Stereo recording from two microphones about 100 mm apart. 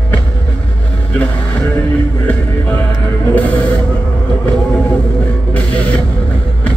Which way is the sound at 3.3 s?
15° left (ahead or behind).